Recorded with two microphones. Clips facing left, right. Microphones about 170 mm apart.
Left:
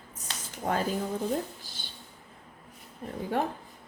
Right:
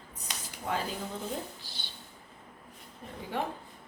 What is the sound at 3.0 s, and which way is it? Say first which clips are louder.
Speech: left 7 dB; 45° left (ahead or behind).